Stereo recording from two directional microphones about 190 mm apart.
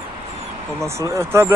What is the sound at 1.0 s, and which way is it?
Speech, 15° right (ahead or behind).